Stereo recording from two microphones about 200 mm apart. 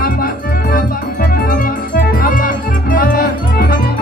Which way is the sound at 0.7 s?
45° left (ahead or behind).